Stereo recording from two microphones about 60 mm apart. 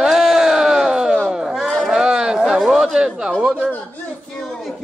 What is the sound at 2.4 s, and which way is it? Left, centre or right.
Speech, centre.